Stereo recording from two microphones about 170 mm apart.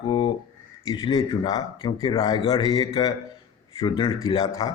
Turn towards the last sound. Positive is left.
turn(degrees=20)  # may be behind; listen again after turning